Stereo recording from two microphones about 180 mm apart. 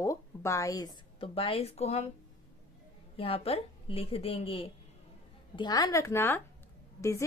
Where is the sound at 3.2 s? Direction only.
30° left (ahead or behind).